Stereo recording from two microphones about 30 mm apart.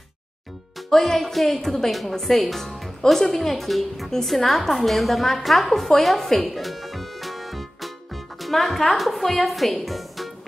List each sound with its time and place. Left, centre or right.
0.8 s music: centre
3.1 s a woman's voice: centre
6.0 s music: centre
8.9 s a woman's voice: centre
9.8 s music: centre